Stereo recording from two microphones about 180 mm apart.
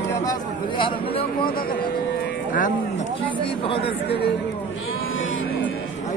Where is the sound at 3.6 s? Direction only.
30° left (ahead or behind).